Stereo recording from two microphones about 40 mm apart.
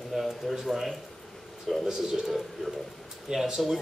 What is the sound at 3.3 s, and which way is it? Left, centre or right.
Speech, centre.